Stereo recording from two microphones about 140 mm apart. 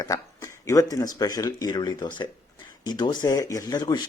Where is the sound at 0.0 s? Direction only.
25° left (ahead or behind).